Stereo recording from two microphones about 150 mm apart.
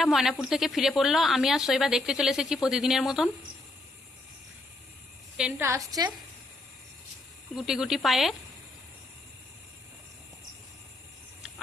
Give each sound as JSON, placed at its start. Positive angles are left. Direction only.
{"t": 0.0, "sound": "a woman's voice", "side_deg": 0}
{"t": 5.4, "sound": "a woman's voice", "side_deg": -15}
{"t": 7.5, "sound": "a woman's voice", "side_deg": -5}